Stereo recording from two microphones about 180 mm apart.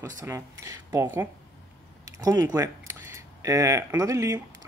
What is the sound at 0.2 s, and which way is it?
Speech, 15° right (ahead or behind).